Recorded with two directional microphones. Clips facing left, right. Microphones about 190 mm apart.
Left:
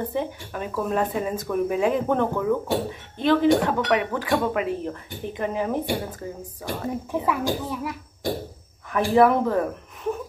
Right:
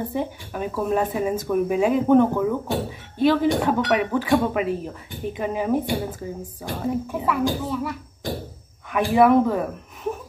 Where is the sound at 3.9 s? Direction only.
20° right (ahead or behind).